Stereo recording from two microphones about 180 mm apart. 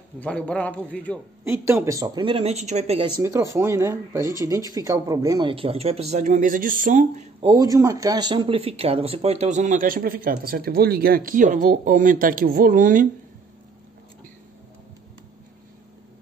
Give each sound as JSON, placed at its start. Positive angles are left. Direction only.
{"t": 0.2, "sound": "a man's voice", "side_deg": 5}
{"t": 1.4, "sound": "speech", "side_deg": -15}
{"t": 3.2, "sound": "speech", "side_deg": -15}
{"t": 5.5, "sound": "speech", "side_deg": -30}
{"t": 7.4, "sound": "speech", "side_deg": -20}